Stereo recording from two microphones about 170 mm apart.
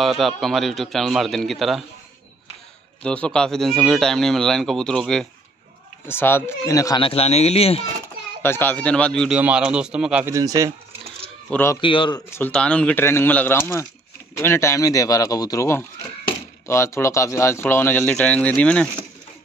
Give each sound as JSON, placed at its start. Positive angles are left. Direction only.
{"t": 0.4, "sound": "speech", "side_deg": 0}
{"t": 3.0, "sound": "speech", "side_deg": 5}
{"t": 7.0, "sound": "speech", "side_deg": 35}
{"t": 8.4, "sound": "speech", "side_deg": 10}
{"t": 10.3, "sound": "speech", "side_deg": -20}
{"t": 11.5, "sound": "speech", "side_deg": 15}
{"t": 11.8, "sound": "speech", "side_deg": 30}
{"t": 12.3, "sound": "speech", "side_deg": 10}